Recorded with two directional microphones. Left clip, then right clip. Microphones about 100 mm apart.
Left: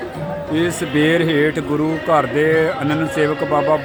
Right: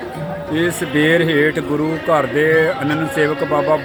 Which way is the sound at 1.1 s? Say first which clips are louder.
Right 1 dB; 15° left (ahead or behind).